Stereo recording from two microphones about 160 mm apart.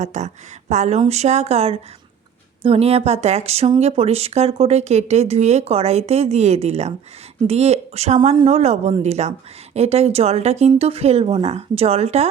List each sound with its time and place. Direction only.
0.0 s speech: 45° right (ahead or behind)